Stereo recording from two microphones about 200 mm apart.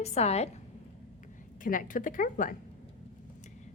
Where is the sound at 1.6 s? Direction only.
40° left (ahead or behind).